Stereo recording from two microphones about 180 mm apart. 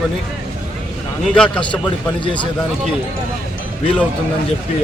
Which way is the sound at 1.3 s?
5° left (ahead or behind).